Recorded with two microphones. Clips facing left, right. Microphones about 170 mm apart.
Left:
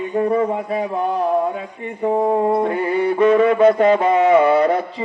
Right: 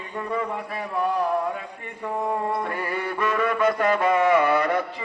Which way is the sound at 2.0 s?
55° left (ahead or behind).